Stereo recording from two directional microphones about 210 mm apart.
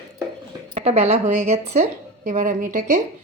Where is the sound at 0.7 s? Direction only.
30° right (ahead or behind).